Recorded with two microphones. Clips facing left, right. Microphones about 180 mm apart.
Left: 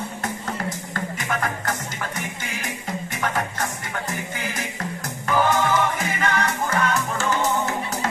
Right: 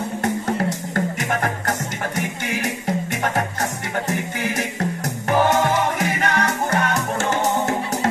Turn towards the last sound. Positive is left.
turn(degrees=-65)  # may be behind; listen again after turning